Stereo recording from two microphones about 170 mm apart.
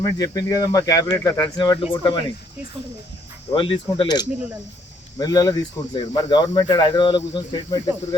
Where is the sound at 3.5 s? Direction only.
30° left (ahead or behind).